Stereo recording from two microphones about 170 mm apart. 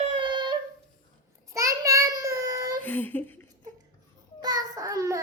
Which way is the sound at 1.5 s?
20° right (ahead or behind).